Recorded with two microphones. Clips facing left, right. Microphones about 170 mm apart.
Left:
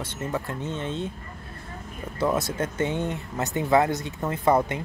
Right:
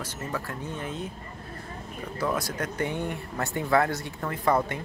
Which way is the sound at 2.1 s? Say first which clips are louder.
Left 4 dB; 25° left (ahead or behind).